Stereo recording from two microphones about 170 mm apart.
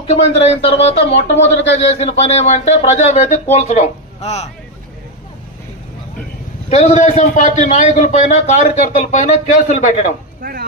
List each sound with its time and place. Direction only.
0.0 s speech: 35° left (ahead or behind)
6.7 s a man's voice: 40° left (ahead or behind)
10.4 s speech: 60° right (ahead or behind)